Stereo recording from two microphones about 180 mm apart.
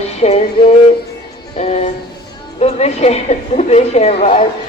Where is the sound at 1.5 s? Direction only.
40° left (ahead or behind).